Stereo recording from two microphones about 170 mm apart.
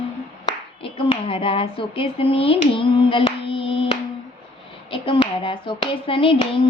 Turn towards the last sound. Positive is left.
turn(degrees=30)  # may be behind; listen again after turning